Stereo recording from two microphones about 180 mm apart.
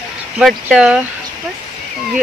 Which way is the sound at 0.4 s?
Centre (ahead or behind).